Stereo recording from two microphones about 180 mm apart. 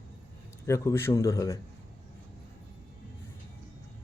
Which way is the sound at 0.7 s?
15° left (ahead or behind).